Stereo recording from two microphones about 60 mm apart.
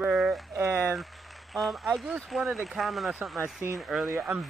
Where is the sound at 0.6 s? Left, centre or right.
Right.